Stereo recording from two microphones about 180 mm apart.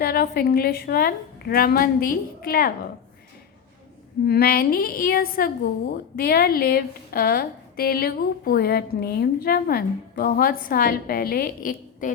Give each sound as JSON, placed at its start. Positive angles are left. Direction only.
{"t": 0.0, "sound": "a woman's voice", "side_deg": 60}
{"t": 4.3, "sound": "a woman's voice", "side_deg": 60}